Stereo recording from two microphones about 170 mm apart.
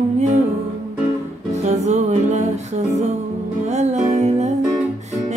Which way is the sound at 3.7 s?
40° right (ahead or behind).